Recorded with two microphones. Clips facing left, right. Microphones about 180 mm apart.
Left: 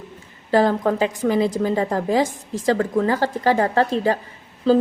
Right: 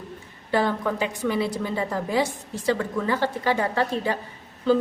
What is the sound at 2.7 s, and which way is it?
A woman's voice, 45° left (ahead or behind).